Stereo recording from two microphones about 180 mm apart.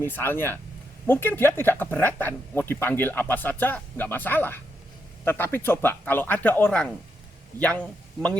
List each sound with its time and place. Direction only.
0.0 s speech: 10° left (ahead or behind)